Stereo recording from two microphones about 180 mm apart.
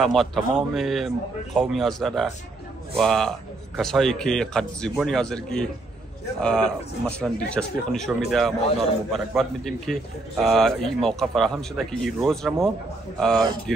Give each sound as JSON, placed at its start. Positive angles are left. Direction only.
{"t": 0.0, "sound": "a man's voice", "side_deg": 0}